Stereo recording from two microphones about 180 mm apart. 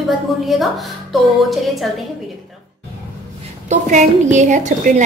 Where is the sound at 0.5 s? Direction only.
Centre (ahead or behind).